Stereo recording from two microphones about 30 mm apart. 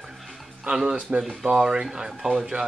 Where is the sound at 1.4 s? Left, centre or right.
Right.